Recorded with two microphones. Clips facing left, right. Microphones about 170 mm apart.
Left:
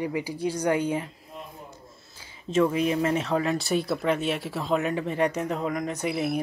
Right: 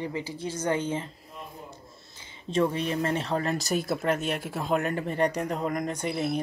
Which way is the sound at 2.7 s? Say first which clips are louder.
Left 4 dB; 5° left (ahead or behind).